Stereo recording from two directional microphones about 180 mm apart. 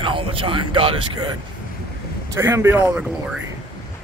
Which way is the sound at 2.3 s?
15° right (ahead or behind).